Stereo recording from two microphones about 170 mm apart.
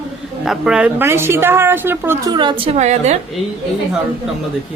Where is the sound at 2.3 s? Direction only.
30° right (ahead or behind).